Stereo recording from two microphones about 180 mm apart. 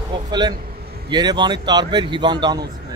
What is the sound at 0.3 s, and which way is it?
Speech, 25° right (ahead or behind).